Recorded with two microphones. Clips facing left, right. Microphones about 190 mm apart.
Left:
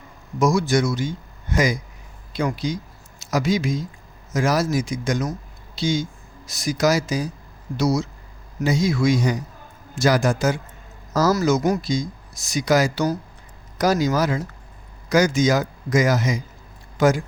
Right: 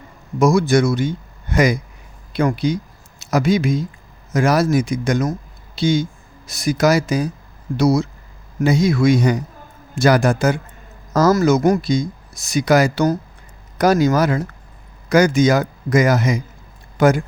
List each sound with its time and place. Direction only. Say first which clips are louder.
0.3 s speech: right 5 dB; 60° right (ahead or behind)